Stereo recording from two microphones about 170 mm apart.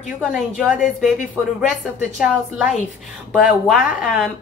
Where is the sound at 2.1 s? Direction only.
5° right (ahead or behind).